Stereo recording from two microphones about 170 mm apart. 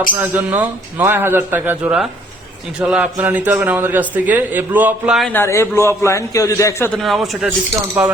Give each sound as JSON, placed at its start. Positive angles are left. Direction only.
{"t": 0.2, "sound": "a man's voice", "side_deg": -10}
{"t": 5.3, "sound": "a man's voice", "side_deg": 15}
{"t": 7.0, "sound": "a man's voice", "side_deg": 0}